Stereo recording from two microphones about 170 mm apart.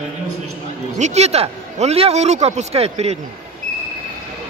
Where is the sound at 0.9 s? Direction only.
40° right (ahead or behind).